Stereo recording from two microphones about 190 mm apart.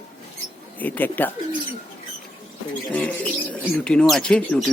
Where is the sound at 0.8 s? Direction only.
10° left (ahead or behind).